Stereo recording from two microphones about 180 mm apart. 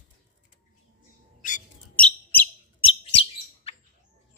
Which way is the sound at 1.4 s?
50° left (ahead or behind).